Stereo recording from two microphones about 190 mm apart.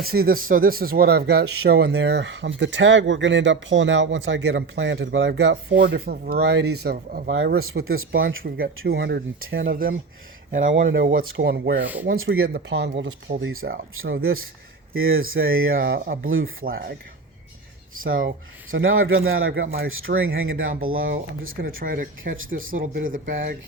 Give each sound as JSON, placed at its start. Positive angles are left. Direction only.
{"t": 0.0, "sound": "speech", "side_deg": -50}
{"t": 7.3, "sound": "speech", "side_deg": -90}
{"t": 8.5, "sound": "speech", "side_deg": -60}
{"t": 9.6, "sound": "speech", "side_deg": -50}
{"t": 10.6, "sound": "speech", "side_deg": -85}
{"t": 12.1, "sound": "speech", "side_deg": -90}
{"t": 13.4, "sound": "speech", "side_deg": -90}
{"t": 17.9, "sound": "speech", "side_deg": -90}
{"t": 21.6, "sound": "speech", "side_deg": -50}